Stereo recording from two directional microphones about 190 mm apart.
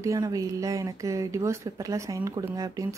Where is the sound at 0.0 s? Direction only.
15° right (ahead or behind).